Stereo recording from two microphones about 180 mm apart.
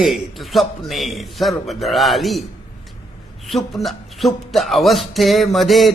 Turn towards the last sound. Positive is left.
turn(degrees=0)  # may be behind; listen again after turning